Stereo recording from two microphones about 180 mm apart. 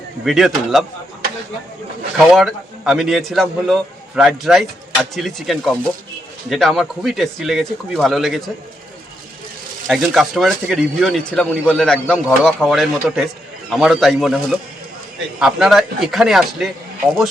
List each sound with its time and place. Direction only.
0.3 s speech: centre (ahead or behind)
2.1 s speech: centre (ahead or behind)
9.8 s speech: 5° right (ahead or behind)